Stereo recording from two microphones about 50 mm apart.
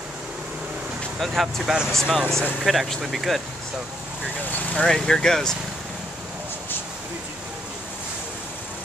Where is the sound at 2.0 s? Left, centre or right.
Centre.